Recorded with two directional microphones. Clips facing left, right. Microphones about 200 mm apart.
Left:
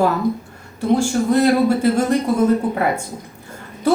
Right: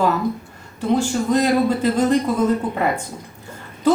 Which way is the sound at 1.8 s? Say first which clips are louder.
Left 1 dB; 10° left (ahead or behind).